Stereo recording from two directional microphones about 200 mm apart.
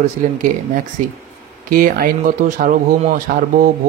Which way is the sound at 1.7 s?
45° right (ahead or behind).